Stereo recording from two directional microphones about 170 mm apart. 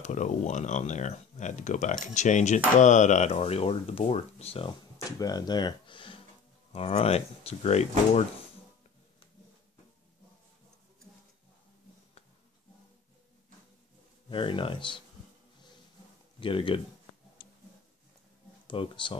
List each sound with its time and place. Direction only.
0.0 s speech: 45° left (ahead or behind)
5.2 s speech: 25° left (ahead or behind); by 7.9 s 40° left (ahead or behind)
14.3 s speech: 30° left (ahead or behind)
16.3 s speech: 30° left (ahead or behind)
18.7 s speech: 30° left (ahead or behind)